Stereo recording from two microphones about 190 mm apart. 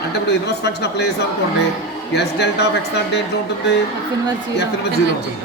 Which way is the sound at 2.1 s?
60° left (ahead or behind).